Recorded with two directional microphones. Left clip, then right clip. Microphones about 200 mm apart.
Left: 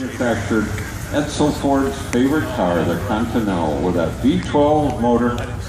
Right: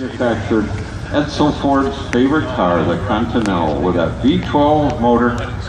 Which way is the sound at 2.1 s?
20° left (ahead or behind).